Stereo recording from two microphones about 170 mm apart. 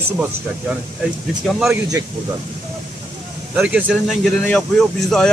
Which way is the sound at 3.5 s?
5° right (ahead or behind).